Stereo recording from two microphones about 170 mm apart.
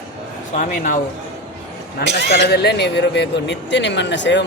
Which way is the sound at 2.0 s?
85° right.